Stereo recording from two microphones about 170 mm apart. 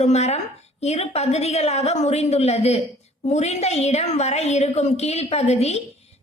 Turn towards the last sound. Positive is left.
turn(degrees=40)  # may be behind; listen again after turning